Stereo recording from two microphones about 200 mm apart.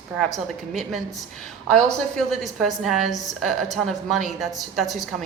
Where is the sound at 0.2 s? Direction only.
Centre (ahead or behind).